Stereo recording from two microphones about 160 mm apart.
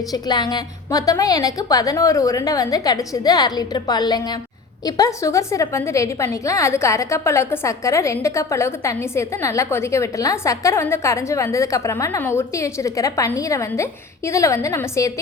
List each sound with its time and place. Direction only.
0.1 s a woman's voice: 25° left (ahead or behind)